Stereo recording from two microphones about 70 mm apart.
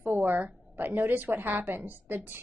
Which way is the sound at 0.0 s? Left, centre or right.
Right.